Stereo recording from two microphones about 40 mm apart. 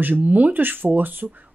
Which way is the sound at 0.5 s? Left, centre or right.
Right.